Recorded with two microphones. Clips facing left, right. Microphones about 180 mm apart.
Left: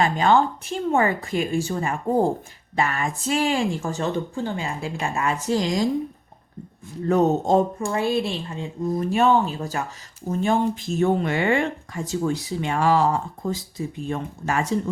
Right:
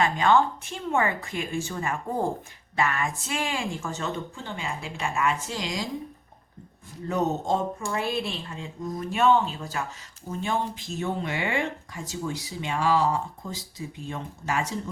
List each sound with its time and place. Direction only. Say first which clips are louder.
0.0 s speech: left 3 dB; 35° left (ahead or behind)
7.1 s speech: left 7 dB; 50° left (ahead or behind)
7.9 s speech: left 6 dB; 30° left (ahead or behind); by 14.7 s 55° left (ahead or behind)